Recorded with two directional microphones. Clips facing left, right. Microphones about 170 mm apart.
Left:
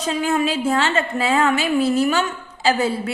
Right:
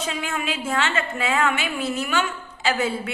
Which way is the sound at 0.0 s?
40° left (ahead or behind).